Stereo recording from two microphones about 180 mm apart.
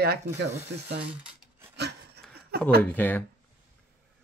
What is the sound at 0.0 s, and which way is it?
Speech, 65° right (ahead or behind).